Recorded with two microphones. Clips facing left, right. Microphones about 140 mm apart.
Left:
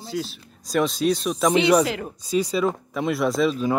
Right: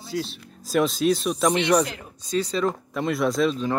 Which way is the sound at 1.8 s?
90° left.